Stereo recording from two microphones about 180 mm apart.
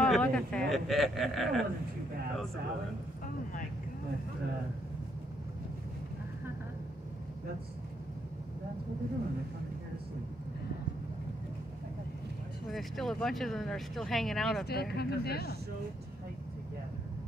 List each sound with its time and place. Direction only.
0.0 s speech: 5° left (ahead or behind)
12.6 s speech: centre (ahead or behind)
14.7 s speech: 60° left (ahead or behind)